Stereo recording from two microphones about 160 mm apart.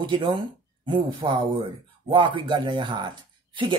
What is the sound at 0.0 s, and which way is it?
Speech, 30° right (ahead or behind).